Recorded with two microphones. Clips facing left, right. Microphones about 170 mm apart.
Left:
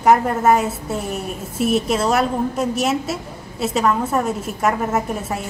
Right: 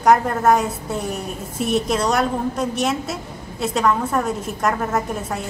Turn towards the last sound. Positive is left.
turn(degrees=5)  # may be behind; listen again after turning